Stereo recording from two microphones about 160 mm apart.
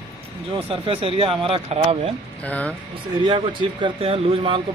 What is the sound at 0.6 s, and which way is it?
Speech, 35° right (ahead or behind).